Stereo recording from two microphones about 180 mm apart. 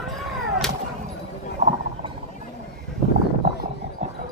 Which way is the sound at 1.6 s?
40° right (ahead or behind).